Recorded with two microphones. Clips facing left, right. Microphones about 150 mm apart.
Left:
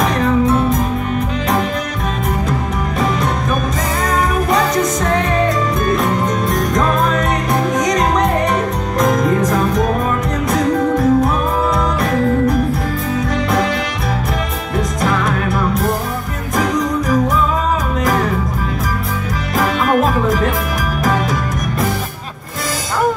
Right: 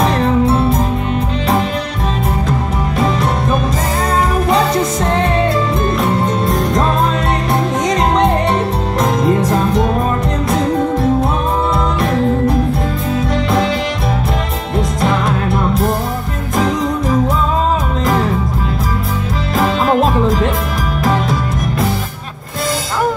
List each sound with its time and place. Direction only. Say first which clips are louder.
0.0 s music: right 1 dB; 30° right (ahead or behind)
5.9 s music: right 1 dB; 30° right (ahead or behind)
10.5 s music: left 1 dB; 25° right (ahead or behind)
19.6 s music: right 1 dB; 25° right (ahead or behind)